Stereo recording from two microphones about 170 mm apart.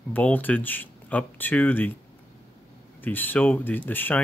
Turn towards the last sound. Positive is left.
turn(degrees=10)  # may be behind; listen again after turning